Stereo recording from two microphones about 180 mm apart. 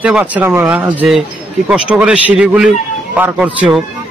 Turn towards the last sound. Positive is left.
turn(degrees=-5)  # may be behind; listen again after turning